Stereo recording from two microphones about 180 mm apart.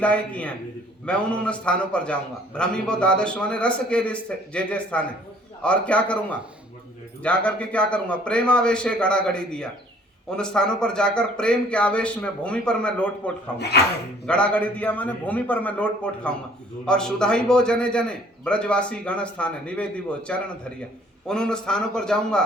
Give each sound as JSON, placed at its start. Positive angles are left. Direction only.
{"t": 0.0, "sound": "a man's voice", "side_deg": 5}
{"t": 7.2, "sound": "a man's voice", "side_deg": 5}
{"t": 13.6, "sound": "speech", "side_deg": 65}
{"t": 14.3, "sound": "a man's voice", "side_deg": 5}